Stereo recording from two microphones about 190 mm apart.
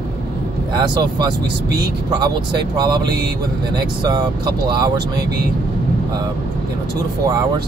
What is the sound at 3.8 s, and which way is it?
Speech, 20° right (ahead or behind).